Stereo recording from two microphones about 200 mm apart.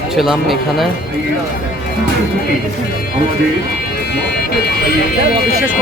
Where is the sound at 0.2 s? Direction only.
Centre (ahead or behind).